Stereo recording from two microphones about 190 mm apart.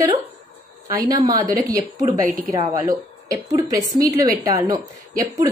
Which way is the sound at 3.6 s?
20° right (ahead or behind).